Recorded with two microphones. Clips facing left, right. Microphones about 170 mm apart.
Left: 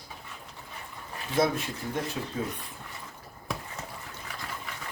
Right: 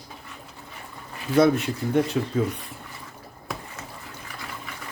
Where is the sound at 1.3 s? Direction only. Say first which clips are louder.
Right 8 dB; 65° right (ahead or behind).